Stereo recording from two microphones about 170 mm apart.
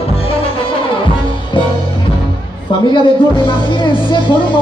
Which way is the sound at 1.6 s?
30° left (ahead or behind).